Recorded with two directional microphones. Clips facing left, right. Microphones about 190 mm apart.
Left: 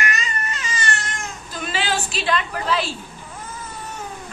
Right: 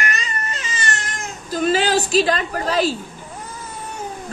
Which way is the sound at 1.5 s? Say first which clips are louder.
Right 8 dB; 40° right (ahead or behind).